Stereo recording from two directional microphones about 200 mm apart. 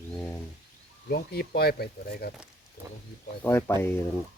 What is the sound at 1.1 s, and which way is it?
Speech, 50° left (ahead or behind).